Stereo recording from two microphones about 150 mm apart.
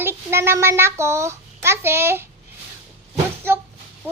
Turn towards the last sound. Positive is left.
turn(degrees=-15)  # may be behind; listen again after turning